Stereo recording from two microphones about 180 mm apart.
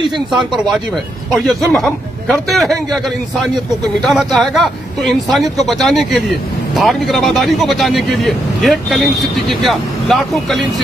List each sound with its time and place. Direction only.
1.3 s speech: centre (ahead or behind)